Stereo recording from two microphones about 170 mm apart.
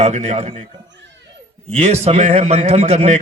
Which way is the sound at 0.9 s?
90° right.